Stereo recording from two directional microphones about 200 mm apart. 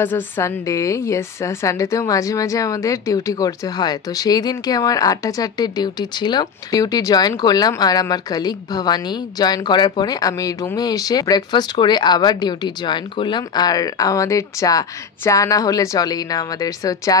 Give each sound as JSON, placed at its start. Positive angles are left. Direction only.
{"t": 0.0, "sound": "a woman's voice", "side_deg": 10}